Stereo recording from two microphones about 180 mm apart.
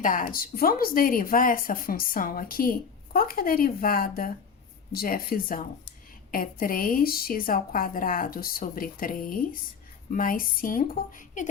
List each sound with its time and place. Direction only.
0.0 s a woman's voice: 50° left (ahead or behind)